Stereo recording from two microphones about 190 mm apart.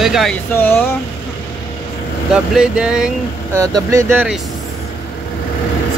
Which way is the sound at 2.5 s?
5° right (ahead or behind).